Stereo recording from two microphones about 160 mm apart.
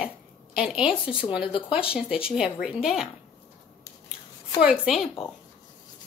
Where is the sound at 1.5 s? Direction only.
35° left (ahead or behind).